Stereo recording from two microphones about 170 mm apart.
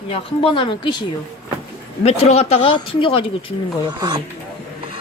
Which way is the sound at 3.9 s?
25° right (ahead or behind).